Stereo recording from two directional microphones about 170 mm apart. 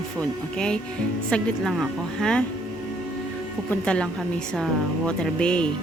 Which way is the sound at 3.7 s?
5° left (ahead or behind).